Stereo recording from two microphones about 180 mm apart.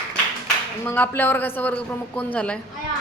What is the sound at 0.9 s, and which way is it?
A woman's voice, 10° left (ahead or behind).